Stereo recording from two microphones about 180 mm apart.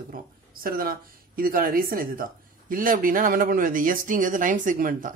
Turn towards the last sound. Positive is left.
turn(degrees=-50)  # may be behind; listen again after turning